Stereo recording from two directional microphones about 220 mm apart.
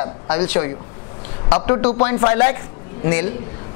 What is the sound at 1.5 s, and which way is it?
A woman's voice, 15° left (ahead or behind).